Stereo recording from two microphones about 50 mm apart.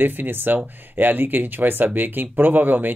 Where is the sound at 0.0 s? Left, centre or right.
Right.